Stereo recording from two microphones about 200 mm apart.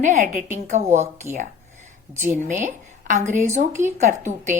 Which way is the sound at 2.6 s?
35° right (ahead or behind).